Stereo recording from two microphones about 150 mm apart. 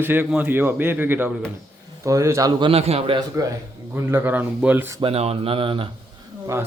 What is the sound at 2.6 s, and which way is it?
Speech, 40° right (ahead or behind).